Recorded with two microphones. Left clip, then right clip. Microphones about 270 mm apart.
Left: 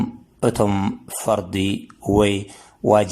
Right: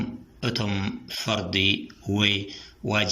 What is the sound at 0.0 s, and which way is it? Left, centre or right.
Speech, left.